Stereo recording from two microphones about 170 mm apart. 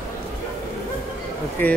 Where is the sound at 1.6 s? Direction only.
10° left (ahead or behind).